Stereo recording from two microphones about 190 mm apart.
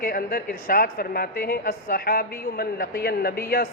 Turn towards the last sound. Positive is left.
turn(degrees=55)  # may be behind; listen again after turning